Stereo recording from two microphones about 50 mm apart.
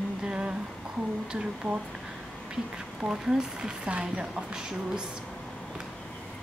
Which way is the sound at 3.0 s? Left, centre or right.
Centre.